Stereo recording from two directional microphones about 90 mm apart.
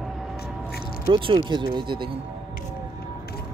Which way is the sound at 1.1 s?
70° right (ahead or behind).